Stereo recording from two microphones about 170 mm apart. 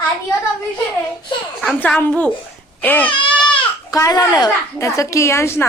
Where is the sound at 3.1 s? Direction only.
30° left (ahead or behind).